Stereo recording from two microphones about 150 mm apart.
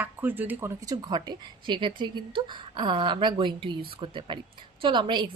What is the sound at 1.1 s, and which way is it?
Speech, 30° right (ahead or behind).